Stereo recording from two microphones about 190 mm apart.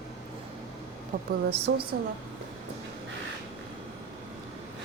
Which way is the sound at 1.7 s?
70° right (ahead or behind).